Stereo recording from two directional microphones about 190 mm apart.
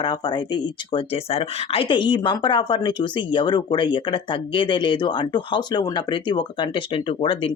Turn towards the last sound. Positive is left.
turn(degrees=30)  # may be behind; listen again after turning